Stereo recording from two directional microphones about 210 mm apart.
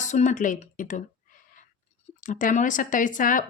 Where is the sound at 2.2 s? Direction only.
40° left (ahead or behind).